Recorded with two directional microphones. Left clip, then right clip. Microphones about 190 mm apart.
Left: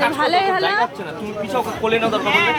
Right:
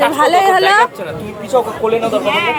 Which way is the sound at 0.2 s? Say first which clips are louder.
Right 7 dB; 5° right (ahead or behind).